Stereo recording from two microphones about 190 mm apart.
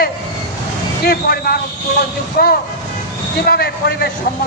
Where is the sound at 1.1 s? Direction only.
55° left (ahead or behind).